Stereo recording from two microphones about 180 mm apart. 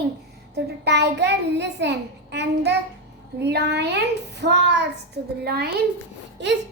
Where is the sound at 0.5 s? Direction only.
70° right (ahead or behind).